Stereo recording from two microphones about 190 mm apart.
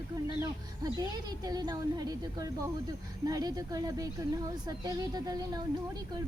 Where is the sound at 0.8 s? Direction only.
20° right (ahead or behind).